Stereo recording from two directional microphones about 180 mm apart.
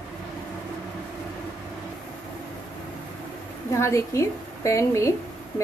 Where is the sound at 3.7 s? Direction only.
15° left (ahead or behind).